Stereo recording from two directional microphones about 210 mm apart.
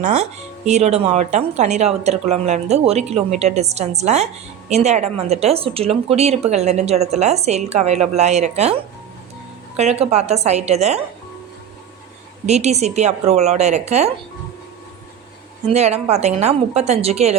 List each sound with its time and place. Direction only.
0.0 s a woman's voice: 35° right (ahead or behind)
9.7 s a woman's voice: 30° right (ahead or behind)
12.5 s a woman's voice: 30° right (ahead or behind)
15.6 s a woman's voice: 30° right (ahead or behind)